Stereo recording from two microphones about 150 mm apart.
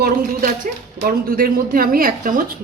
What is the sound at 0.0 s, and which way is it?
Speech, 70° right (ahead or behind).